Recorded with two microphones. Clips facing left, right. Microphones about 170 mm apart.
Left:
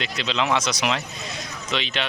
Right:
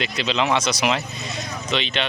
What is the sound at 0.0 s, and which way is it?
A man's voice, 5° right (ahead or behind).